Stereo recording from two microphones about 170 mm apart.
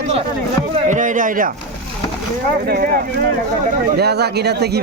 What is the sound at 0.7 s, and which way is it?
Speech, 45° right (ahead or behind).